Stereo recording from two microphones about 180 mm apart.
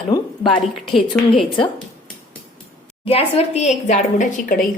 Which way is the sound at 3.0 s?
35° left (ahead or behind).